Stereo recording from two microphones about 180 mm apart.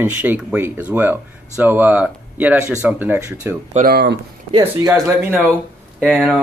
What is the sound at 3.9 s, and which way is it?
Speech, 60° right (ahead or behind).